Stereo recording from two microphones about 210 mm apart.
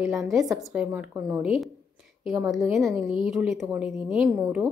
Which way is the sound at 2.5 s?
Centre (ahead or behind).